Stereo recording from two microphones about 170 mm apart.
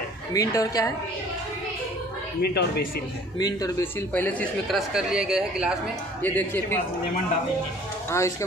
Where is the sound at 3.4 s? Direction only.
20° left (ahead or behind).